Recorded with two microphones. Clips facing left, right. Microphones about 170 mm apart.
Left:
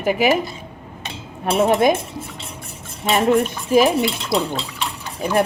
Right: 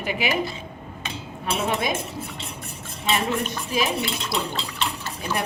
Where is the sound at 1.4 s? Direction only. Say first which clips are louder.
Left 10 dB; 55° left (ahead or behind).